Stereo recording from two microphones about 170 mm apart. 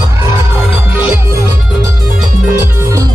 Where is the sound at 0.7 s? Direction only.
10° right (ahead or behind).